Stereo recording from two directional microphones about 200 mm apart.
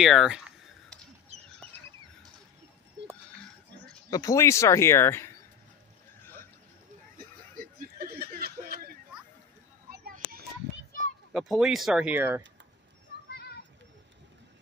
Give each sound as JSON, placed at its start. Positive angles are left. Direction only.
{"t": 0.0, "sound": "speech", "side_deg": 0}
{"t": 3.0, "sound": "sheep", "side_deg": -60}
{"t": 4.1, "sound": "speech", "side_deg": 15}
{"t": 8.0, "sound": "a sound", "side_deg": -50}
{"t": 11.3, "sound": "speech", "side_deg": 0}